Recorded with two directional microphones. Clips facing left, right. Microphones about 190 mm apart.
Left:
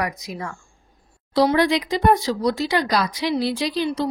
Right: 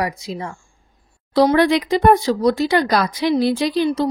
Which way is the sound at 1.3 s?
50° right (ahead or behind).